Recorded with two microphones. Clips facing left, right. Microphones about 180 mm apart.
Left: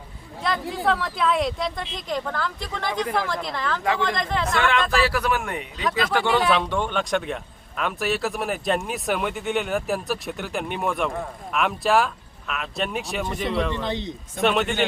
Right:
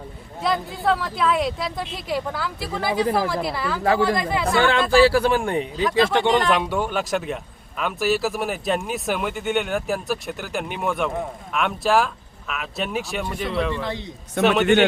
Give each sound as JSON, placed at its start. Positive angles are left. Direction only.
{"t": 0.4, "sound": "speech", "side_deg": 0}
{"t": 4.4, "sound": "speech", "side_deg": -35}
{"t": 6.5, "sound": "speech", "side_deg": -10}